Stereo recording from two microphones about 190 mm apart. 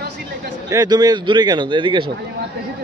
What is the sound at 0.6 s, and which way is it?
A man's voice, 20° right (ahead or behind).